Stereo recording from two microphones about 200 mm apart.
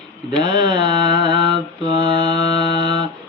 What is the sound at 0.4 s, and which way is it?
Mantra, 20° right (ahead or behind).